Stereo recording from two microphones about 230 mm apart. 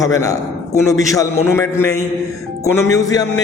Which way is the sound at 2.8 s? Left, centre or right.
Centre.